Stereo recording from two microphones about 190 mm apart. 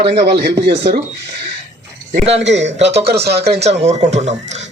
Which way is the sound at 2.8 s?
65° right (ahead or behind).